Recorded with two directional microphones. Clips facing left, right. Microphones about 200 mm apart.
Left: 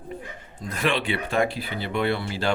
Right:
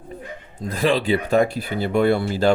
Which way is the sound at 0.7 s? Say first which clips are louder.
Right 6 dB; 35° right (ahead or behind).